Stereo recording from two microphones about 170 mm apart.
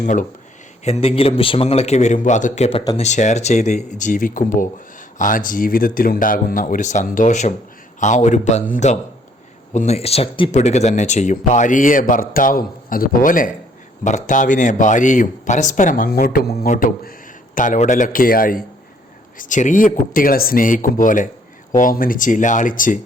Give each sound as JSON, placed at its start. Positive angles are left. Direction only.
{"t": 0.0, "sound": "speech", "side_deg": 50}
{"t": 0.9, "sound": "a man's voice", "side_deg": 35}